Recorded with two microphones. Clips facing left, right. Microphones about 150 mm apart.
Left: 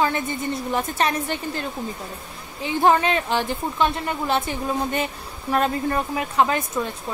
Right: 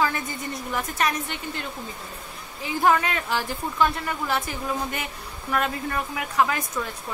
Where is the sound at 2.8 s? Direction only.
25° left (ahead or behind).